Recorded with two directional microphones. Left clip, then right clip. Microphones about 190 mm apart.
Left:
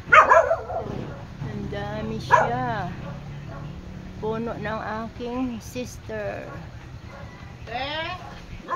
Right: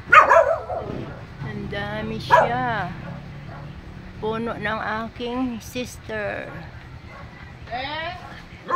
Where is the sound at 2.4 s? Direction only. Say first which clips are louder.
Right 3 dB; 5° right (ahead or behind).